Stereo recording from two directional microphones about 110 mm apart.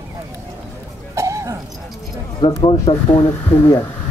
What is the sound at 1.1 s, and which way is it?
Cricket, 30° right (ahead or behind).